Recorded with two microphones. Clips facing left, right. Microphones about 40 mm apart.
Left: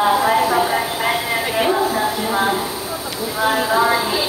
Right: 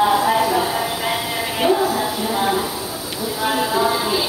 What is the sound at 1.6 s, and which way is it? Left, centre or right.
Music, centre.